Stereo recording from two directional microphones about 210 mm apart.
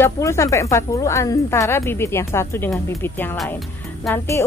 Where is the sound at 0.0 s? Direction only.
15° left (ahead or behind).